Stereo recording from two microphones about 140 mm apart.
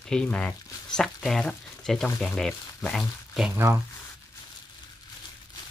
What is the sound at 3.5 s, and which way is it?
Speech, 20° right (ahead or behind).